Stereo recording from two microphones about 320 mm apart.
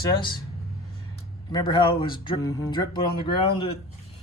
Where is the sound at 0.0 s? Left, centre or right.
Centre.